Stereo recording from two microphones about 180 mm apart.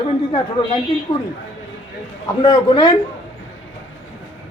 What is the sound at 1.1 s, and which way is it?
Speech, 25° left (ahead or behind).